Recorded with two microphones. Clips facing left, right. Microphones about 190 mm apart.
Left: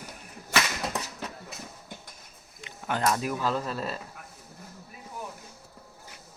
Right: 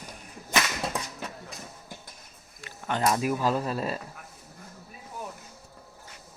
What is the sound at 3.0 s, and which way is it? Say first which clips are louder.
Speech: right 3 dB; 10° right (ahead or behind).